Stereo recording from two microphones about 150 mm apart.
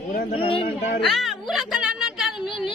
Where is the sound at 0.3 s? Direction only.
35° left (ahead or behind).